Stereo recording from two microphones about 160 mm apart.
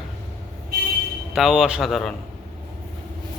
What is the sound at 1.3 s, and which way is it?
Speech, 5° right (ahead or behind).